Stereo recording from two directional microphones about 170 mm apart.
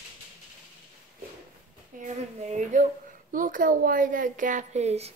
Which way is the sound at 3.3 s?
55° right (ahead or behind).